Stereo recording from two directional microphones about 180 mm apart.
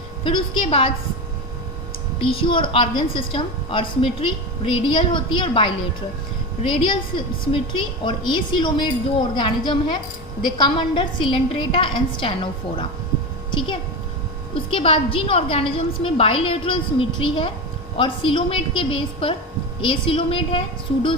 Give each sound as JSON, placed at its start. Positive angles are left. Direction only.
{"t": 0.3, "sound": "a woman's voice", "side_deg": 30}
{"t": 2.1, "sound": "a woman's voice", "side_deg": 30}